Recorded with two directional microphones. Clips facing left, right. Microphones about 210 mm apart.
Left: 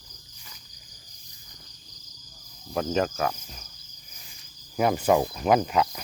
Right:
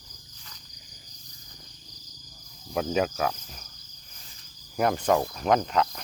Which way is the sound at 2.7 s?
Centre (ahead or behind).